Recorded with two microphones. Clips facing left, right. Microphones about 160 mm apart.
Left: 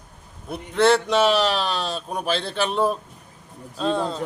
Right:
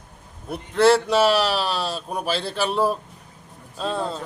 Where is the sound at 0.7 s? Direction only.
5° right (ahead or behind).